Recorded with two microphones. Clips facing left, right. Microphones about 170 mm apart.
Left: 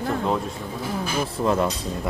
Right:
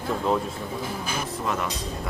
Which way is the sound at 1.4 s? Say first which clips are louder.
Left 8 dB; 30° left (ahead or behind).